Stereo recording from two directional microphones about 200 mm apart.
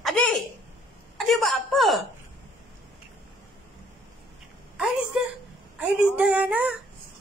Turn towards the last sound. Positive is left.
turn(degrees=-5)  # may be behind; listen again after turning